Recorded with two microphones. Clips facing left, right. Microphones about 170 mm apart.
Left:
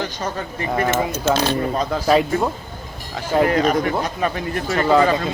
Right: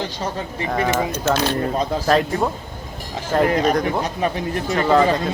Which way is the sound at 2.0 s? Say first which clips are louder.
Left 2 dB; 5° left (ahead or behind).